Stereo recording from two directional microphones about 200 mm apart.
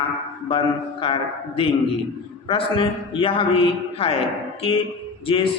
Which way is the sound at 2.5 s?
25° left (ahead or behind).